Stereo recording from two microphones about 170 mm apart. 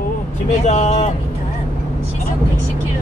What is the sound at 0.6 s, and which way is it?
Speech, 40° left (ahead or behind).